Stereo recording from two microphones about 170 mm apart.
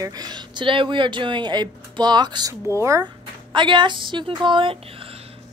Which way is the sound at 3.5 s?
30° right (ahead or behind).